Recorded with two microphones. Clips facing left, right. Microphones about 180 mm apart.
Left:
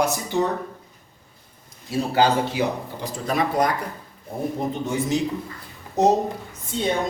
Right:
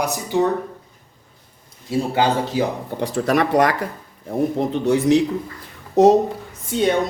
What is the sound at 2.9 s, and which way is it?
Speech, 70° right (ahead or behind).